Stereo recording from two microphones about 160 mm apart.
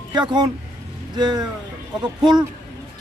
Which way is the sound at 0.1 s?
25° right (ahead or behind).